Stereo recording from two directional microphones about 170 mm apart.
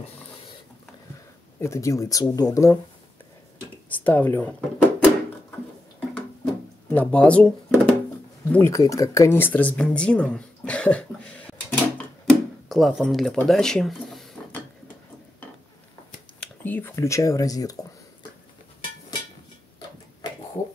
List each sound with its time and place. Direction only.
1.6 s speech: 15° left (ahead or behind)
3.9 s speech: 10° left (ahead or behind)
5.9 s a sound: 5° left (ahead or behind)
8.5 s speech: 15° left (ahead or behind)
16.3 s speech: 10° left (ahead or behind)